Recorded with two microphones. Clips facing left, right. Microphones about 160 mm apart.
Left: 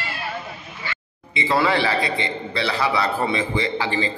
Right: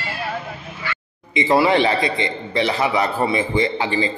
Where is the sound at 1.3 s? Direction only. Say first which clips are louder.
Right 4 dB; 15° right (ahead or behind).